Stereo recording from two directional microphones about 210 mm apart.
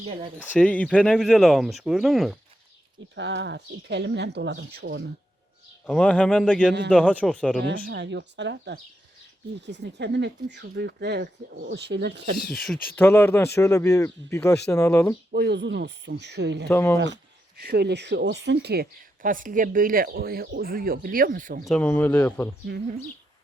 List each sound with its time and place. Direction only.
0.6 s speech: 5° left (ahead or behind)
3.2 s speech: 55° right (ahead or behind)
5.8 s speech: 5° left (ahead or behind)
7.6 s speech: 55° right (ahead or behind)
12.5 s speech: centre (ahead or behind)
15.3 s speech: 55° right (ahead or behind)
16.6 s speech: 10° left (ahead or behind)
17.6 s speech: 50° right (ahead or behind)
21.7 s speech: 5° left (ahead or behind)